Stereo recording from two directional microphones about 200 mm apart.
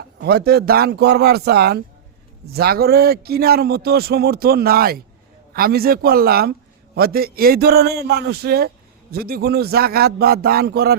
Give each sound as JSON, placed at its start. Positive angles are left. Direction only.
{"t": 0.2, "sound": "a man's voice", "side_deg": -50}